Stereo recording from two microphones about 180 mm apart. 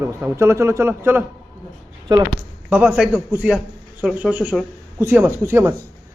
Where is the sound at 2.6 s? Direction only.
10° right (ahead or behind).